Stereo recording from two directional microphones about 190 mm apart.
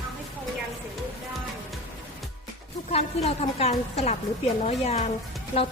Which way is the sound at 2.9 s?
35° left (ahead or behind).